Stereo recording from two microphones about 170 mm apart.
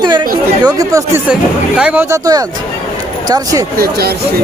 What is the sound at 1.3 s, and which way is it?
Speech, 5° right (ahead or behind).